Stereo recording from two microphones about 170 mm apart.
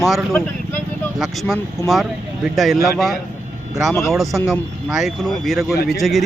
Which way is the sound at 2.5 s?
Centre (ahead or behind).